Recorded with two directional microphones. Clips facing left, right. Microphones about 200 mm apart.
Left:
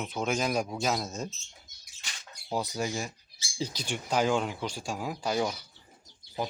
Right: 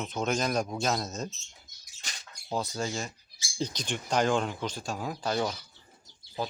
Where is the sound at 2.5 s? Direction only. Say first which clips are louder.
Left 1 dB; 15° left (ahead or behind).